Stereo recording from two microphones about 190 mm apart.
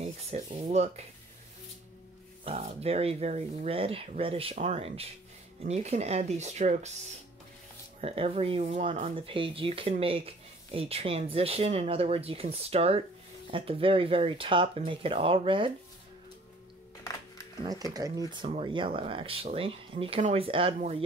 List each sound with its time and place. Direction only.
0.0 s speech: 35° right (ahead or behind)
2.4 s speech: 35° right (ahead or behind)
8.0 s speech: 30° right (ahead or behind)
17.6 s speech: 20° right (ahead or behind)